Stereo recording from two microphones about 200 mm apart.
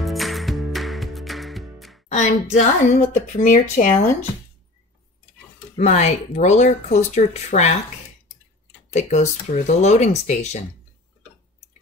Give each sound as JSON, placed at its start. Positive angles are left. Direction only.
{"t": 0.0, "sound": "music", "side_deg": 0}
{"t": 2.0, "sound": "speech", "side_deg": 35}
{"t": 5.8, "sound": "speech", "side_deg": 35}
{"t": 8.9, "sound": "speech", "side_deg": 35}